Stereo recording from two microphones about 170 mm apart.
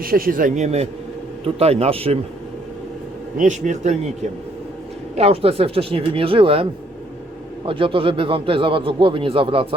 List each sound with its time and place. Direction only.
0.0 s a man's voice: 60° right (ahead or behind); by 2.1 s 35° right (ahead or behind)
3.3 s a man's voice: 45° right (ahead or behind)
7.7 s speech: 30° right (ahead or behind)